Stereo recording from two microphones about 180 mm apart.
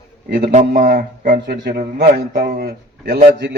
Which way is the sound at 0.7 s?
50° right (ahead or behind).